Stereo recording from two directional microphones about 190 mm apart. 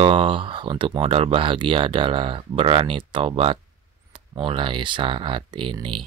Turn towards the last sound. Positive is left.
turn(degrees=-25)  # may be behind; listen again after turning